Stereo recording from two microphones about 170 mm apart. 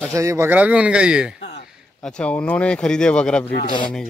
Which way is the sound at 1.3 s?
80° left.